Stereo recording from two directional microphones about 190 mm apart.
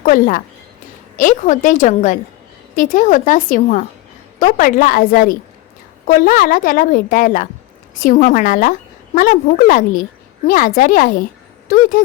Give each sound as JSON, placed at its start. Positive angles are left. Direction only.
{"t": 0.0, "sound": "a woman's voice", "side_deg": 45}